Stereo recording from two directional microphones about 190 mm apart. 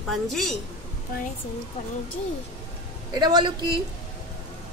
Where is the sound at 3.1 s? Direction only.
20° right (ahead or behind).